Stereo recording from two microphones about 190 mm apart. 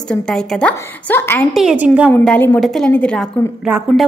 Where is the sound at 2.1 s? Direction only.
10° left (ahead or behind).